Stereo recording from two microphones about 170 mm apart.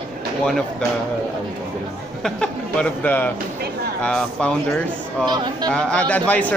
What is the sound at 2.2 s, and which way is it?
Speech, 5° left (ahead or behind).